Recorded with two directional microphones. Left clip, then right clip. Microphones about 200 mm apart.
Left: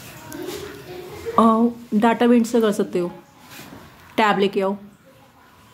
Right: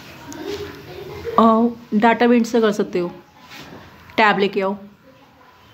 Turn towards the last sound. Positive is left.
turn(degrees=10)  # may be behind; listen again after turning